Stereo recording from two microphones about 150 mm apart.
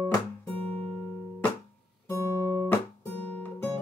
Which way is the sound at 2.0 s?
15° left (ahead or behind).